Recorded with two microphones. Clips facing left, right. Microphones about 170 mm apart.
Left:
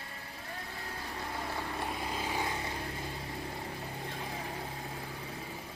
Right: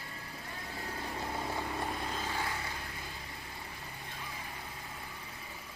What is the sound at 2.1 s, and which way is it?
Vehicle, 10° left (ahead or behind).